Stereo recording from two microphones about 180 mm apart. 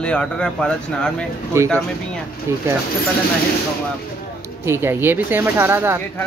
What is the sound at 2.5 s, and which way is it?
Speech, 15° right (ahead or behind).